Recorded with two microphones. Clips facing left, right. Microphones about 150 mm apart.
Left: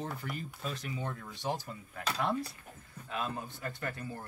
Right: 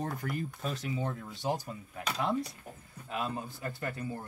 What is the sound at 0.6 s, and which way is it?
Speech, 35° right (ahead or behind).